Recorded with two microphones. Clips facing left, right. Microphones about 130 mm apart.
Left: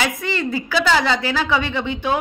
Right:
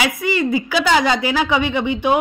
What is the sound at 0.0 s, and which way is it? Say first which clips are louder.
Speech: right 3 dB; 10° right (ahead or behind).